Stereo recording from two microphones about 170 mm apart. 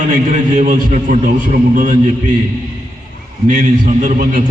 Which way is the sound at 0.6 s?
50° right (ahead or behind).